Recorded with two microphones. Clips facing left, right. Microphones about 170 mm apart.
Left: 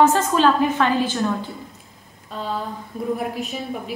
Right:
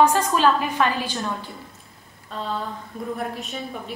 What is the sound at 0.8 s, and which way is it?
Speech, 15° right (ahead or behind).